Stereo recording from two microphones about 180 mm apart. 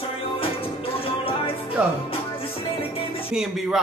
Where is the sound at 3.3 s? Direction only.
5° right (ahead or behind).